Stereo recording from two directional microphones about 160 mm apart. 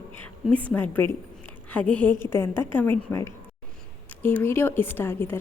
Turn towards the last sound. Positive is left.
turn(degrees=15)  # may be behind; listen again after turning